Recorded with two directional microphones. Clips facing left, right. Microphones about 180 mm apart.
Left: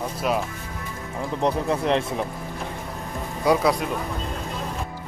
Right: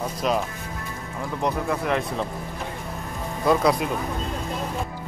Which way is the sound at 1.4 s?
25° left (ahead or behind).